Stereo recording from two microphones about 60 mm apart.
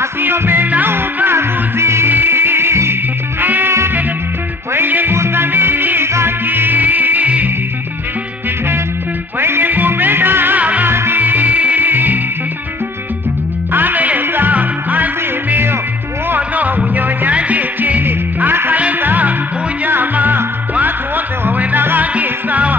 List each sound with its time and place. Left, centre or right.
0.2 s music: right
4.7 s music: right
9.4 s music: right
10.9 s music: right
13.7 s music: right
16.3 s music: right